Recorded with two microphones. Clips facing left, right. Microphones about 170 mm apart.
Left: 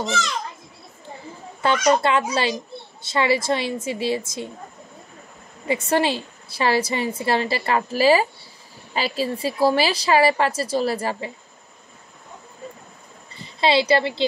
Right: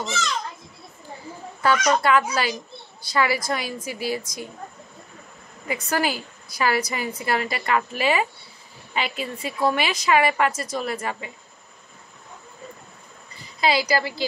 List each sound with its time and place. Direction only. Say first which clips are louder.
1.6 s a woman's voice: left 2 dB; 25° left (ahead or behind)
5.7 s a woman's voice: left 4 dB; 25° left (ahead or behind)
13.6 s a woman's voice: left 4 dB; 25° left (ahead or behind)